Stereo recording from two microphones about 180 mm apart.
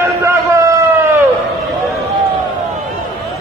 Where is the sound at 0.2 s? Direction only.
15° right (ahead or behind).